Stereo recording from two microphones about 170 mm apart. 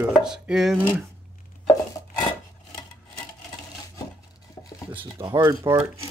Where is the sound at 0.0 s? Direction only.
5° right (ahead or behind).